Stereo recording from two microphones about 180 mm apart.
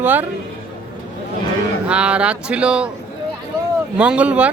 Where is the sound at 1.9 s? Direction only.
5° right (ahead or behind).